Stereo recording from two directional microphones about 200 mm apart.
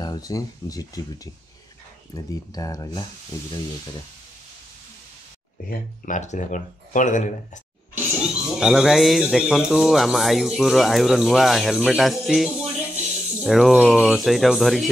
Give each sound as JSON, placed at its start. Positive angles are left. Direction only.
{"t": 0.0, "sound": "speech", "side_deg": 20}
{"t": 5.7, "sound": "speech", "side_deg": 40}
{"t": 8.5, "sound": "speech", "side_deg": -5}